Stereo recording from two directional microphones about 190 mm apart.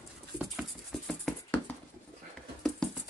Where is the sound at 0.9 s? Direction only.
Centre (ahead or behind).